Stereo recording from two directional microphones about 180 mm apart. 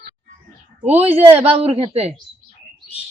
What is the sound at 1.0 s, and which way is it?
Speech, 35° right (ahead or behind).